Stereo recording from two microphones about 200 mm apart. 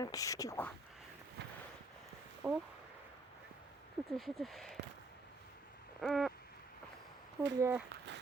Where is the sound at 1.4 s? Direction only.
60° right (ahead or behind).